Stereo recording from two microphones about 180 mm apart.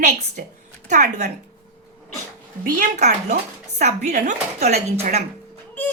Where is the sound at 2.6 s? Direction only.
45° right (ahead or behind).